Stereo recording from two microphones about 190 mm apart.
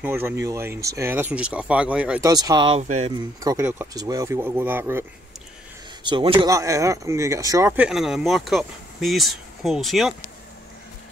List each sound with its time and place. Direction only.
0.0 s speech: 10° right (ahead or behind)
2.2 s speech: 20° right (ahead or behind)
6.0 s speech: 25° right (ahead or behind)
6.5 s speech: 15° right (ahead or behind); by 10.1 s centre (ahead or behind)